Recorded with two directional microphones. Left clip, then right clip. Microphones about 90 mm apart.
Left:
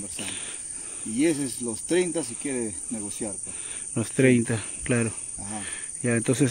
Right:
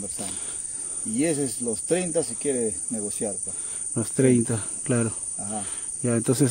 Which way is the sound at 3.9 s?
15° right (ahead or behind).